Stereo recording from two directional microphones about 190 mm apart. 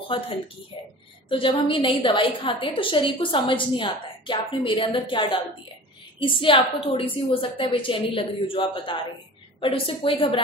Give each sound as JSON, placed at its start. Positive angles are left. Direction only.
{"t": 1.3, "sound": "a woman's voice", "side_deg": 25}